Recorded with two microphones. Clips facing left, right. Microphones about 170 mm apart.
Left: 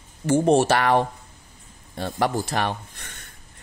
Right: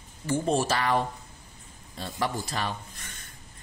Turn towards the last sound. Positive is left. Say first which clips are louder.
# left 6 dB
turn(degrees=75)  # may be behind; listen again after turning